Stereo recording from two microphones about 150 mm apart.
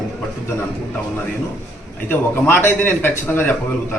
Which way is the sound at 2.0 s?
15° left (ahead or behind).